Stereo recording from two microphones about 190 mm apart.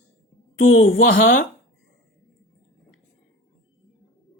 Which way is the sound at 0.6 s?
90° left.